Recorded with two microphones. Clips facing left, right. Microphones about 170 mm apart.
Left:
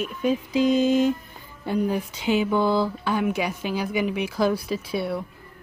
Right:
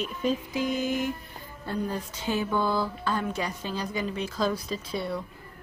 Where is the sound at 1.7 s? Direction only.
15° left (ahead or behind).